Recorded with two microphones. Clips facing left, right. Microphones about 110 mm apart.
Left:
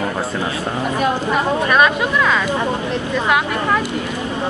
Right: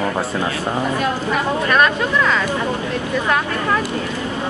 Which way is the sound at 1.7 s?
15° left (ahead or behind).